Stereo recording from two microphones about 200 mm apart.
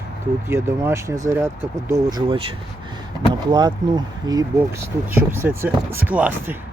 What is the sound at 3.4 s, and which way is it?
Speech, 20° right (ahead or behind).